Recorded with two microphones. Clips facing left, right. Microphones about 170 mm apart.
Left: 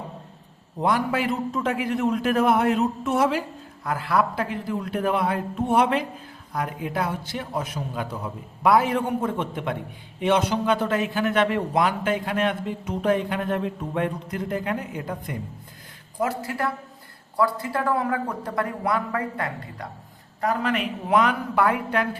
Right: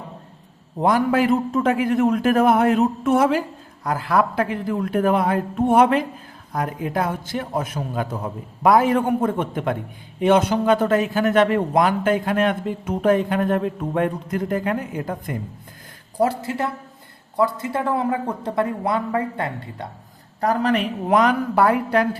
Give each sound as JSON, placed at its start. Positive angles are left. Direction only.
{"t": 0.8, "sound": "a man's voice", "side_deg": -45}
{"t": 16.1, "sound": "speech", "side_deg": -35}
{"t": 20.4, "sound": "a woman's voice", "side_deg": -35}